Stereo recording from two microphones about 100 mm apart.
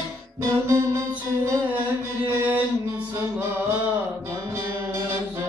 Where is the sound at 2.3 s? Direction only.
20° right (ahead or behind).